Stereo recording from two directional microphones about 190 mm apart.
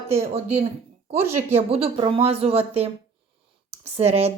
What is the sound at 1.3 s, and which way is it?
Speech, 30° right (ahead or behind).